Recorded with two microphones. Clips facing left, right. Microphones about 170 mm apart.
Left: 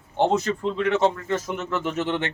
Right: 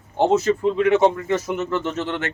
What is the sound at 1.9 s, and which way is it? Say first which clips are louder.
Speech: even; 15° left (ahead or behind).